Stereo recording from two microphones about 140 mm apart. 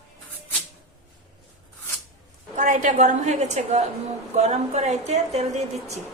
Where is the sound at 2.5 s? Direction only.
60° right (ahead or behind).